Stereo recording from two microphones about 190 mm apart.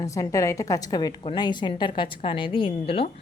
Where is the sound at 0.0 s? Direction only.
15° left (ahead or behind).